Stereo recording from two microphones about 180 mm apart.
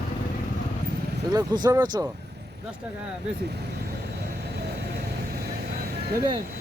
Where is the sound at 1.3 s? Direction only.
20° right (ahead or behind).